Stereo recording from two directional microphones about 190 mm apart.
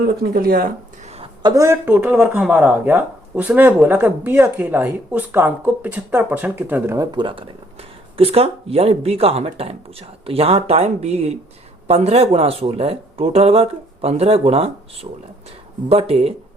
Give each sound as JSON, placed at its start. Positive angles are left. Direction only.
{"t": 0.2, "sound": "speech", "side_deg": -50}
{"t": 1.0, "sound": "a sound", "side_deg": -35}
{"t": 1.4, "sound": "speech", "side_deg": -20}
{"t": 15.9, "sound": "speech", "side_deg": -30}